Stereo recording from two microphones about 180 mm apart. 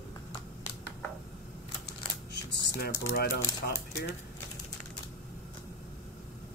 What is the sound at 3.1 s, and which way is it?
Speech, 60° left (ahead or behind).